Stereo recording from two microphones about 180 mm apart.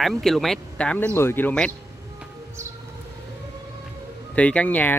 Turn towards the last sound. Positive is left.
turn(degrees=10)  # may be behind; listen again after turning